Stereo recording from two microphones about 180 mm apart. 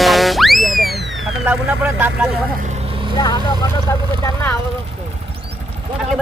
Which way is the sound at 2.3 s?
50° right (ahead or behind).